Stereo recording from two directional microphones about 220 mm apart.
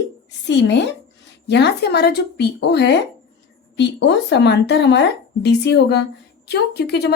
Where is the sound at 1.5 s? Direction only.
50° left (ahead or behind).